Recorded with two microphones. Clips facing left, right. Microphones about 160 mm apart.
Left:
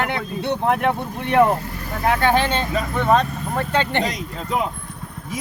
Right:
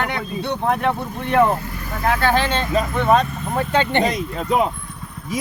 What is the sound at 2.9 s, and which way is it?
Speech, 5° right (ahead or behind).